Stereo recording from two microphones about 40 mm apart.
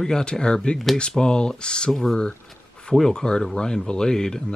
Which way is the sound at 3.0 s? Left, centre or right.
Centre.